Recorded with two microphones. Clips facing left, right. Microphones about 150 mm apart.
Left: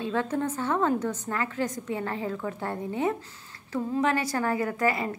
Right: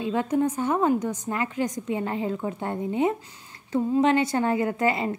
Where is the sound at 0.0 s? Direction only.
15° right (ahead or behind).